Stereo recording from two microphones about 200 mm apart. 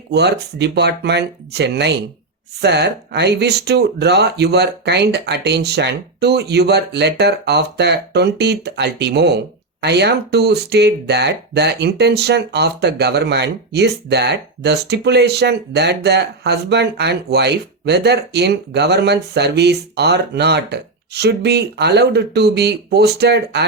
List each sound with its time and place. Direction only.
0.1 s speech: 55° right (ahead or behind)